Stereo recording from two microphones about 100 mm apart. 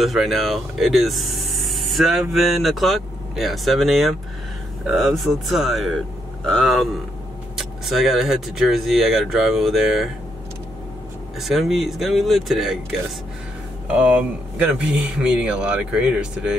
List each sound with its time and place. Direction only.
0.0 s speech: centre (ahead or behind)
11.3 s speech: centre (ahead or behind)
13.8 s speech: 10° right (ahead or behind)